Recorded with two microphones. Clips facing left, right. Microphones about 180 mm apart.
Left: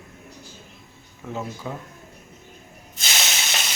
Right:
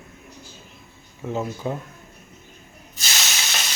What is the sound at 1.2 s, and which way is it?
Speech, 25° right (ahead or behind).